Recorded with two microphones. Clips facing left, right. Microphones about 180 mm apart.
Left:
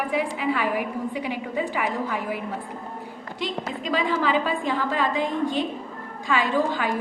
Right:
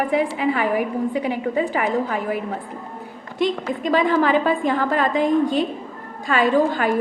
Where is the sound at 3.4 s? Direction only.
50° right (ahead or behind).